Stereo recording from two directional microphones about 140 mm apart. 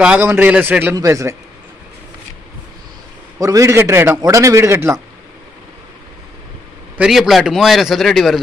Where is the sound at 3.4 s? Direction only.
25° right (ahead or behind).